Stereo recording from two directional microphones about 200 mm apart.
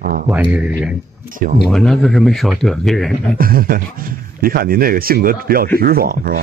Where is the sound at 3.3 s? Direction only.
45° right (ahead or behind).